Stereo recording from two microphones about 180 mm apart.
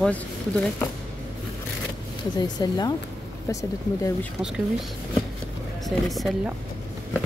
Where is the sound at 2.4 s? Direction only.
20° left (ahead or behind).